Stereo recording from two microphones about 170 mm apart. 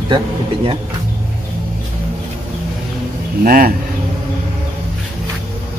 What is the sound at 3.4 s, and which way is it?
Speech, 55° right (ahead or behind).